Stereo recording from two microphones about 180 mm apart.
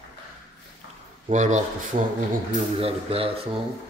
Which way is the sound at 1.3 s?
45° right (ahead or behind).